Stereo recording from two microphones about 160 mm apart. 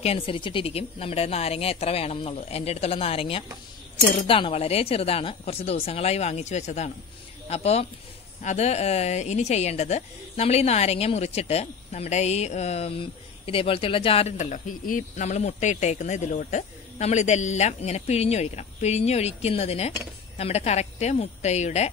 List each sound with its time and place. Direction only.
0.0 s a woman's voice: 35° left (ahead or behind)
14.5 s speech: 55° left (ahead or behind)